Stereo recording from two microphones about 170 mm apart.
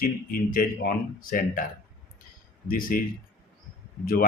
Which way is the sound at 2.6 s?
55° left (ahead or behind).